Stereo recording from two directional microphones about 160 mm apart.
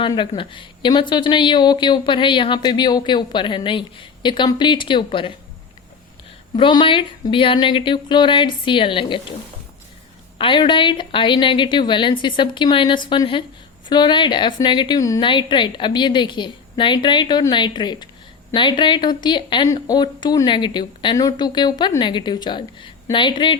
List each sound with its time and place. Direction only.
0.1 s speech: 30° left (ahead or behind)
6.6 s a woman's voice: 30° left (ahead or behind)
10.3 s a woman's voice: 30° left (ahead or behind)